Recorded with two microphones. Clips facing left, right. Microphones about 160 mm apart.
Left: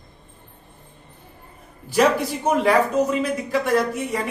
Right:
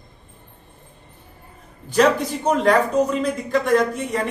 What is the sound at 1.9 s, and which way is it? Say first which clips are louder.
A man's voice: right 1 dB; 10° left (ahead or behind).